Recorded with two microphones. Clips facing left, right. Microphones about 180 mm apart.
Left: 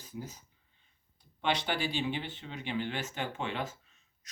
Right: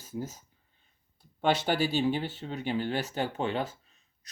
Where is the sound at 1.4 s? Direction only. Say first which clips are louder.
Right 5 dB; 40° right (ahead or behind).